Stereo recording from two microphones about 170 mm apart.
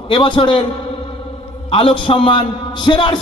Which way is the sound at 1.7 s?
35° left (ahead or behind).